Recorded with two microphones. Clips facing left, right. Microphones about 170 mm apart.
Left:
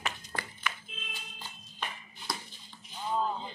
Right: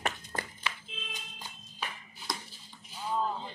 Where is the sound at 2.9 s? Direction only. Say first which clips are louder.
Left 1 dB; 10° right (ahead or behind).